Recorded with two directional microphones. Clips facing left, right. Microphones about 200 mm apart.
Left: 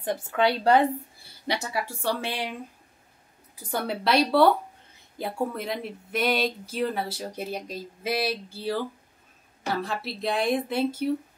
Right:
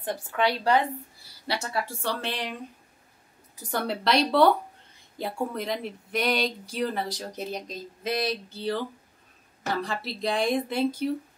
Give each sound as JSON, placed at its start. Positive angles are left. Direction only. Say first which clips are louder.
{"t": 0.0, "sound": "speech", "louder": "left 2 dB", "side_deg": 15}
{"t": 0.7, "sound": "speech", "louder": "left 3 dB", "side_deg": 30}
{"t": 1.5, "sound": "speech", "louder": "left 1 dB", "side_deg": 15}
{"t": 3.7, "sound": "a woman's voice", "louder": "left 1 dB", "side_deg": 5}